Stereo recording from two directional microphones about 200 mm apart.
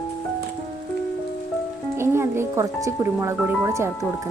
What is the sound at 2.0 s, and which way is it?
A woman's voice, 15° right (ahead or behind).